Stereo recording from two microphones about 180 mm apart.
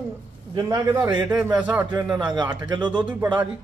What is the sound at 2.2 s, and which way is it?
Speech, 25° right (ahead or behind).